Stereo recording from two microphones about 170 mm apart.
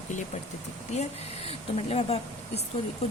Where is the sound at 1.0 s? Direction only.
35° left (ahead or behind).